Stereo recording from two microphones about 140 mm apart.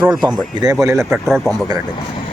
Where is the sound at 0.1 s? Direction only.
5° right (ahead or behind).